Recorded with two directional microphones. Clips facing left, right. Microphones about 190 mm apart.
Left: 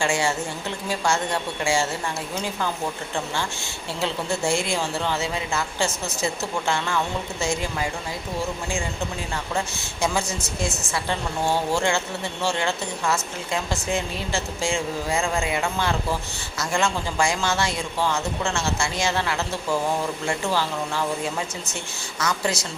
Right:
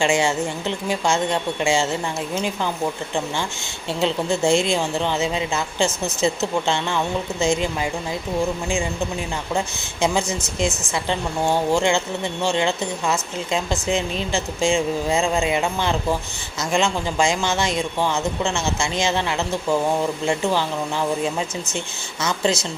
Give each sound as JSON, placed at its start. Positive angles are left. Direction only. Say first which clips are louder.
{"t": 0.0, "sound": "a woman's voice", "louder": "right 4 dB", "side_deg": -20}
{"t": 4.0, "sound": "a woman's voice", "louder": "right 5 dB", "side_deg": -20}
{"t": 9.6, "sound": "a woman's voice", "louder": "right 3 dB", "side_deg": -20}